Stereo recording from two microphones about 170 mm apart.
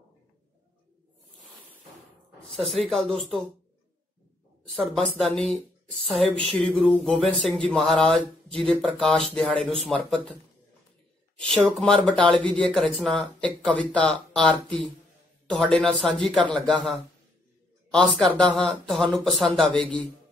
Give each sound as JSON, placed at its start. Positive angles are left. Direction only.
{"t": 2.7, "sound": "speech", "side_deg": 0}
{"t": 4.7, "sound": "speech", "side_deg": 0}
{"t": 11.4, "sound": "speech", "side_deg": 5}
{"t": 17.9, "sound": "speech", "side_deg": 0}